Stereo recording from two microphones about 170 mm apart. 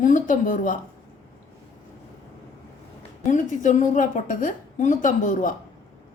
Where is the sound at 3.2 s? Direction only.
45° left (ahead or behind).